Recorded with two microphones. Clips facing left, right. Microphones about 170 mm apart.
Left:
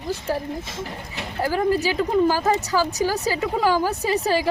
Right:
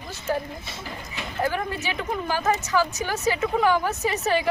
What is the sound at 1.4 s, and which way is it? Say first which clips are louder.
Speech: left 6 dB; 35° left (ahead or behind).